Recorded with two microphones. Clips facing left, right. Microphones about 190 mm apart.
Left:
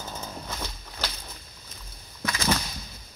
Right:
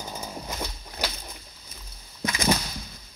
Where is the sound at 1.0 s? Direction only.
15° right (ahead or behind).